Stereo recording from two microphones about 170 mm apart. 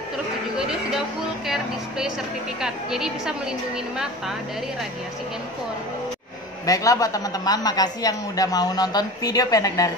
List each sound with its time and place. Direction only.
1.5 s music: 5° right (ahead or behind)
2.6 s a woman's voice: 5° right (ahead or behind)
6.6 s a man's voice: 20° left (ahead or behind)